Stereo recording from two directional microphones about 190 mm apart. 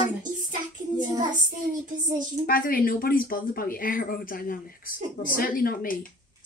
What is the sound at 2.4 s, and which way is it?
Speech, 50° left (ahead or behind).